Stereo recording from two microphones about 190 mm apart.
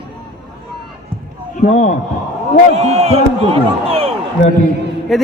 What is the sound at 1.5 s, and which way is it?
Speech, 40° left (ahead or behind).